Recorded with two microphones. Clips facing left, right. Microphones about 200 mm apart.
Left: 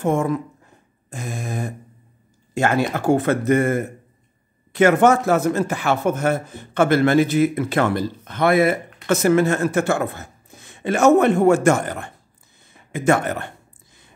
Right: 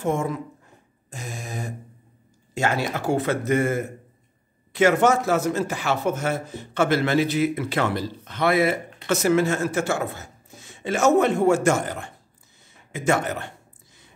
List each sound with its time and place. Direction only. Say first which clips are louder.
0.0 s speech: left 4 dB; 55° left (ahead or behind)